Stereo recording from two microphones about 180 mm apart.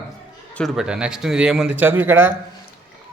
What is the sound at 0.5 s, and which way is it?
A man's voice, centre (ahead or behind).